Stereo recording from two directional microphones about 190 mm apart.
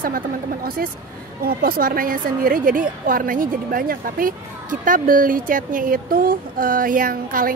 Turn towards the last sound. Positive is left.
turn(degrees=-50)  # may be behind; listen again after turning